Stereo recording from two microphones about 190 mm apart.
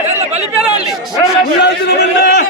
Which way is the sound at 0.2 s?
35° right (ahead or behind).